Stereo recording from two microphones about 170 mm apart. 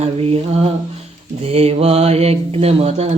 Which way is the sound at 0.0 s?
35° right (ahead or behind).